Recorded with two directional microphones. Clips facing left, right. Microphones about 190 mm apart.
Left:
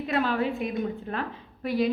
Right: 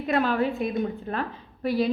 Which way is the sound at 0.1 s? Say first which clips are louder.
Right 3 dB; 50° right (ahead or behind).